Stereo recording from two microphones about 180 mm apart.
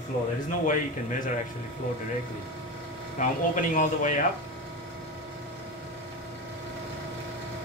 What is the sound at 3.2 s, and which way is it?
Speech, 45° left (ahead or behind).